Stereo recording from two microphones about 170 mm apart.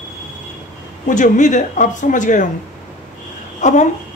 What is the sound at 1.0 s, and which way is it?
Speech, 50° left (ahead or behind).